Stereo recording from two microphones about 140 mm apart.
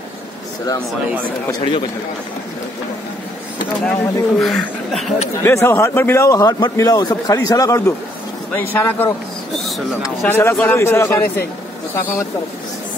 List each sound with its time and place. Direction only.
1.5 s speech: 40° left (ahead or behind)
3.8 s speech: 5° left (ahead or behind)
5.4 s a man's voice: 20° left (ahead or behind)
10.2 s a man's voice: 15° left (ahead or behind)